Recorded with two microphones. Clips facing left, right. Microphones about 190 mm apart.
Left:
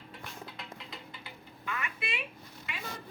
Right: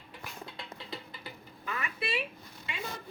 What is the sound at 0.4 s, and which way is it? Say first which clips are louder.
Music: right 1 dB; 30° right (ahead or behind).